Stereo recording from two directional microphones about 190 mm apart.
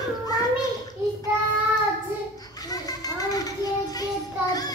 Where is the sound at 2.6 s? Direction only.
20° left (ahead or behind).